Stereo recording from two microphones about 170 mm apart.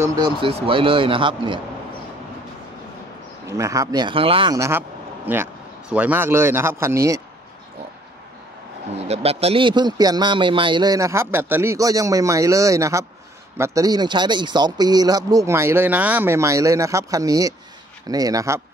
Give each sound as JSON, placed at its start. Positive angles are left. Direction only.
{"t": 0.0, "sound": "speech", "side_deg": -20}
{"t": 0.4, "sound": "speech", "side_deg": -30}
{"t": 3.4, "sound": "speech", "side_deg": -20}
{"t": 4.6, "sound": "speech", "side_deg": -15}
{"t": 8.9, "sound": "speech", "side_deg": -40}